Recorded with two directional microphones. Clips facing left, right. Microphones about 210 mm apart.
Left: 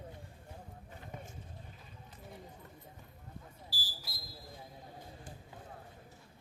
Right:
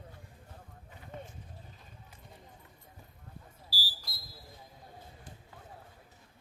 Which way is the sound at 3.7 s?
20° left (ahead or behind).